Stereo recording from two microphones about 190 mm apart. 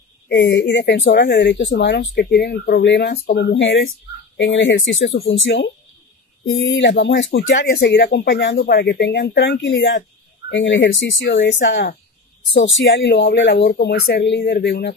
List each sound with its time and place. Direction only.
0.3 s speech: 65° left (ahead or behind)
6.6 s speech: 75° left (ahead or behind)